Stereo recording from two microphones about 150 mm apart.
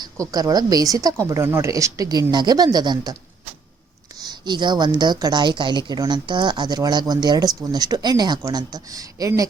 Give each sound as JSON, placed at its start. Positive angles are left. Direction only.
{"t": 0.0, "sound": "a woman's voice", "side_deg": -25}
{"t": 4.2, "sound": "a woman's voice", "side_deg": -30}